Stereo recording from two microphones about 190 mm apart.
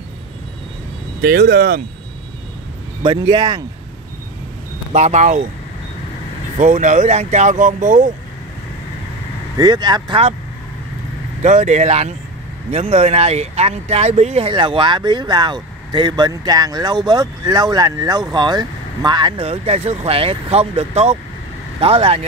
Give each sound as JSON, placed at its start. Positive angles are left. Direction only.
{"t": 1.2, "sound": "speech", "side_deg": -50}
{"t": 3.0, "sound": "speech", "side_deg": -20}
{"t": 4.9, "sound": "speech", "side_deg": -35}
{"t": 6.6, "sound": "speech", "side_deg": -40}
{"t": 9.6, "sound": "speech", "side_deg": -20}
{"t": 11.4, "sound": "speech", "side_deg": -35}